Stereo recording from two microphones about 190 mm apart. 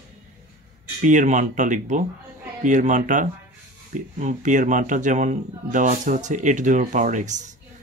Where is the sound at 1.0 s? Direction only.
40° right (ahead or behind).